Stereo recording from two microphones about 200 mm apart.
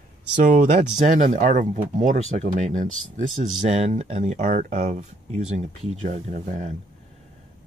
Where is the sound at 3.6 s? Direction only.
35° right (ahead or behind).